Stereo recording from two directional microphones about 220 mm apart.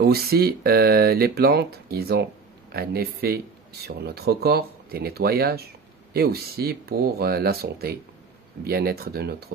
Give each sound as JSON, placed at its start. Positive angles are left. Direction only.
{"t": 0.0, "sound": "speech", "side_deg": -45}